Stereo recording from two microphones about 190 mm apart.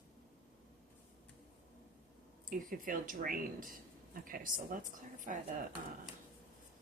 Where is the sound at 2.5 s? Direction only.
45° right (ahead or behind).